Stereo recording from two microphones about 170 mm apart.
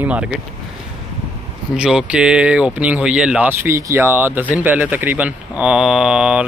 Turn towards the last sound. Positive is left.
turn(degrees=-5)  # may be behind; listen again after turning